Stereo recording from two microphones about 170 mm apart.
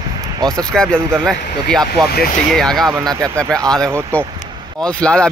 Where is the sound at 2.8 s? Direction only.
20° right (ahead or behind).